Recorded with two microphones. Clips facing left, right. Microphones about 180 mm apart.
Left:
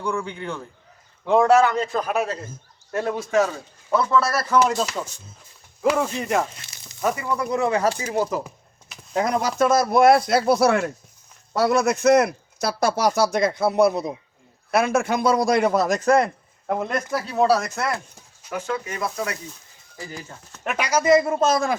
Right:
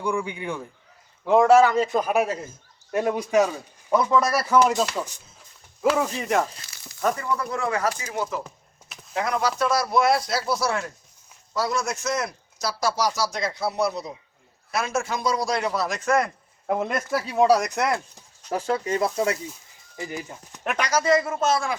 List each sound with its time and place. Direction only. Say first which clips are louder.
0.0 s speech: even; 10° right (ahead or behind)
4.6 s speech: even; centre (ahead or behind)
6.6 s sizzle: even; 25° left (ahead or behind)
7.0 s a man's voice: left 1 dB; 10° left (ahead or behind); by 16.0 s 50° left (ahead or behind)
16.0 s speech: left 3 dB; 30° left (ahead or behind)
16.6 s speech: even; 5° right (ahead or behind); by 18.0 s 20° right (ahead or behind)
18.5 s speech: right 3 dB; 35° right (ahead or behind); by 20.6 s 15° right (ahead or behind)
20.7 s speech: left 3 dB; 5° left (ahead or behind)
21.2 s speech: left 4 dB; 40° left (ahead or behind)